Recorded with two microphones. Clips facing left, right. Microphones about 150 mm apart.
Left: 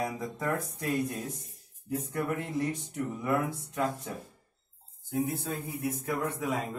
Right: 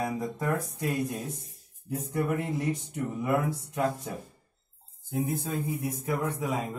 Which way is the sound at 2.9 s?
10° right (ahead or behind).